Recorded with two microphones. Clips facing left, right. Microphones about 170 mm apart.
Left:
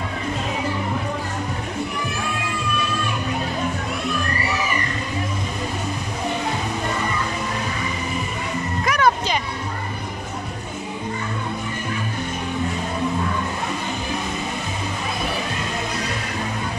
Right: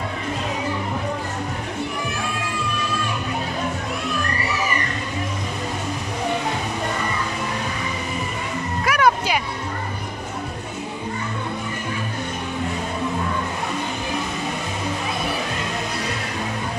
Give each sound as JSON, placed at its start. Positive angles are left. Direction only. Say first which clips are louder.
{"t": 8.8, "sound": "music", "louder": "right 1 dB", "side_deg": -10}